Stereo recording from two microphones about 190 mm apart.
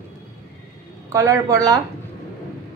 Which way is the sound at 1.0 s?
15° right (ahead or behind).